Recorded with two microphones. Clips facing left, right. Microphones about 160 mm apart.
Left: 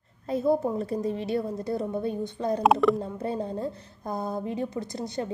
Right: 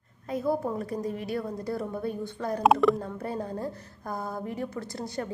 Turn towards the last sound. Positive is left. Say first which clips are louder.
# left 2 dB
turn(degrees=20)  # may be behind; listen again after turning